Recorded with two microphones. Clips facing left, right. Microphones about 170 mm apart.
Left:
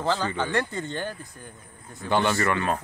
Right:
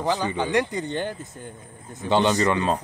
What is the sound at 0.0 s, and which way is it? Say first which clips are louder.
Speech: right 2 dB; 15° right (ahead or behind).